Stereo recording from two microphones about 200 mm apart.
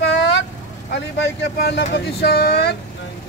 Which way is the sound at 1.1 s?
55° left (ahead or behind).